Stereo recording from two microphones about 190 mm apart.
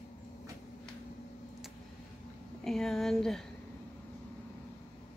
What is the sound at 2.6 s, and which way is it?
Speech, centre (ahead or behind).